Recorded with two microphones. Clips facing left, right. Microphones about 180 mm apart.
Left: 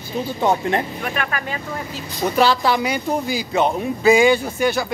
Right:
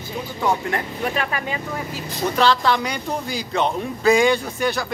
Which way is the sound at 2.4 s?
10° left (ahead or behind).